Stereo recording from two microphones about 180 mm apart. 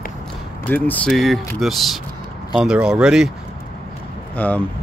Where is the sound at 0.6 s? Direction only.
10° left (ahead or behind).